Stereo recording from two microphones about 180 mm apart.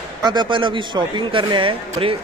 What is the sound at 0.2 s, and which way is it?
A man's voice, 25° right (ahead or behind).